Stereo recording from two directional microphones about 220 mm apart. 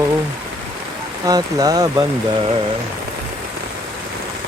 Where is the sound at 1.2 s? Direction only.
15° right (ahead or behind).